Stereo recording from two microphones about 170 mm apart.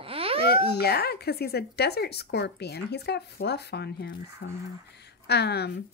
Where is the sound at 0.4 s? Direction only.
70° left (ahead or behind).